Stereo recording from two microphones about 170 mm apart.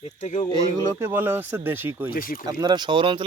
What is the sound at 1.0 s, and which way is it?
Speech, 10° right (ahead or behind).